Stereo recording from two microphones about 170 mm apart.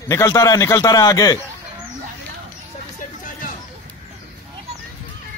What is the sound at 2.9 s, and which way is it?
Music, 50° left (ahead or behind).